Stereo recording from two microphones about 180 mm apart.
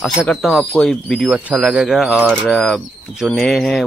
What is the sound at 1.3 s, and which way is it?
Speech, 5° right (ahead or behind).